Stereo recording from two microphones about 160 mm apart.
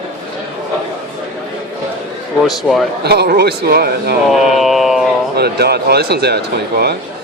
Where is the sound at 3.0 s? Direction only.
90° right; by 4.1 s 75° right (ahead or behind).